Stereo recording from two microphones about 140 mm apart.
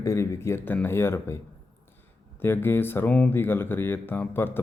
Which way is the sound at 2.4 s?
15° left (ahead or behind).